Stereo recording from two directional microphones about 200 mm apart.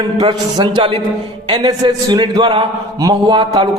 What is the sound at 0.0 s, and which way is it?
A man's voice, 20° right (ahead or behind).